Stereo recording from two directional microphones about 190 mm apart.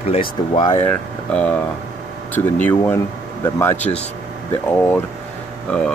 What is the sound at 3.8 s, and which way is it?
Speech, 35° left (ahead or behind).